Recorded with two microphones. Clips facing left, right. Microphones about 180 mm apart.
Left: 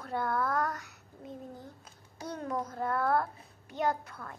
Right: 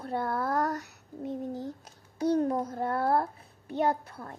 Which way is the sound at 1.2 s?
80° right.